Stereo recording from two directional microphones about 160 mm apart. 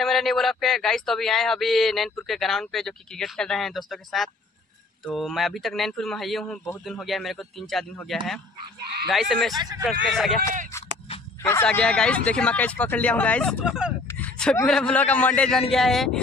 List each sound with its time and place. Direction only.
0.0 s speech: centre (ahead or behind)
9.1 s speech: centre (ahead or behind)
9.6 s speech: 25° right (ahead or behind)
9.8 s speech: centre (ahead or behind)
11.6 s speech: 5° left (ahead or behind)
13.7 s speech: 5° right (ahead or behind)
14.0 s a sound: 10° left (ahead or behind)
14.7 s speech: 5° left (ahead or behind)